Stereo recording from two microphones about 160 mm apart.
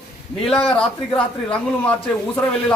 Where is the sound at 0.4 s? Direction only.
5° left (ahead or behind).